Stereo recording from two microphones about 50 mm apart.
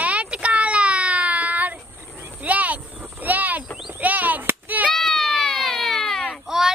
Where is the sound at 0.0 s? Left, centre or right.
Right.